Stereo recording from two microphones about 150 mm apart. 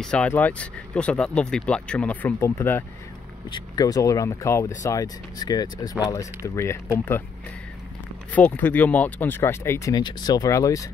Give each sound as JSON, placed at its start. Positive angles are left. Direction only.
{"t": 0.0, "sound": "speech", "side_deg": 5}
{"t": 3.4, "sound": "speech", "side_deg": 30}
{"t": 8.3, "sound": "speech", "side_deg": 10}